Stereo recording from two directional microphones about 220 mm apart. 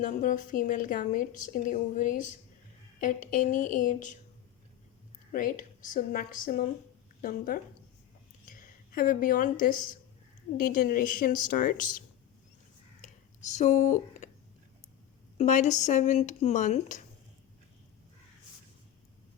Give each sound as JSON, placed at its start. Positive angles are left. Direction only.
{"t": 0.0, "sound": "a woman's voice", "side_deg": 35}
{"t": 5.3, "sound": "a woman's voice", "side_deg": 35}
{"t": 13.5, "sound": "speech", "side_deg": 35}
{"t": 15.4, "sound": "a woman's voice", "side_deg": 35}